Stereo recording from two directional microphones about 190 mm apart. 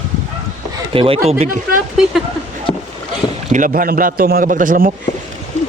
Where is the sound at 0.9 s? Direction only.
30° right (ahead or behind).